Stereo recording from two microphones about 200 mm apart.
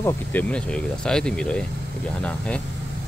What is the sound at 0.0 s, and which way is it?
Speech, 10° left (ahead or behind).